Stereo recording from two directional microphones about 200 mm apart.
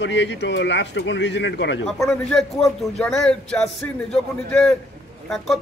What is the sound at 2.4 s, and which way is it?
Speech, centre (ahead or behind).